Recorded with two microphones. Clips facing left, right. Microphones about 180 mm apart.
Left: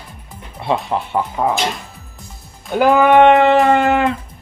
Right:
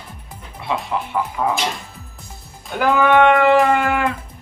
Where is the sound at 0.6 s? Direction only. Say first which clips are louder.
Left 4 dB; 30° left (ahead or behind).